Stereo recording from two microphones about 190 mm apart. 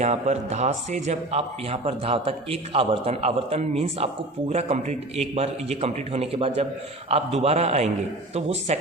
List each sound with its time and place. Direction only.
0.0 s a man's voice: 35° right (ahead or behind)